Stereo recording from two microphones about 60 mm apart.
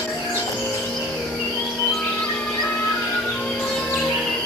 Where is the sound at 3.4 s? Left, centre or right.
Centre.